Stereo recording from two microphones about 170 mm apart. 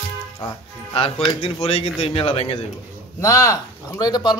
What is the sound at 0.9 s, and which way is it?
Speech, 35° left (ahead or behind).